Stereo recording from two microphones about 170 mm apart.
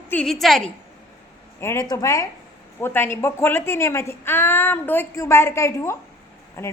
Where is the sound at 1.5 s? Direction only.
15° left (ahead or behind).